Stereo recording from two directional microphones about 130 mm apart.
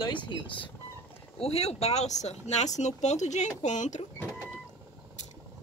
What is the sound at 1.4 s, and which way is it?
Speech, 50° left (ahead or behind).